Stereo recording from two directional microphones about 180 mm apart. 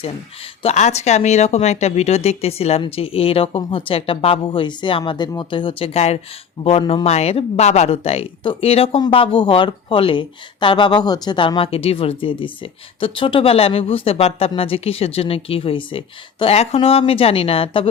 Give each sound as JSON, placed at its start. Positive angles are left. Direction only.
{"t": 0.6, "sound": "speech", "side_deg": 40}